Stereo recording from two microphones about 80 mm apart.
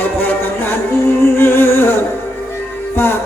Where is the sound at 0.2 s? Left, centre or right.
Left.